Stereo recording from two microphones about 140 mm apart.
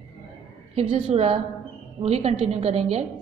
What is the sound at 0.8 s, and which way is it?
A woman's voice, 45° right (ahead or behind).